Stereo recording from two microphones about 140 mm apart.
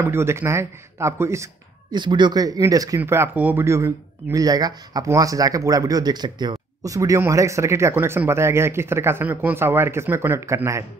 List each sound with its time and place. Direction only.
0.0 s speech: 15° right (ahead or behind)
2.0 s speech: 30° right (ahead or behind)
3.0 s speech: 15° right (ahead or behind)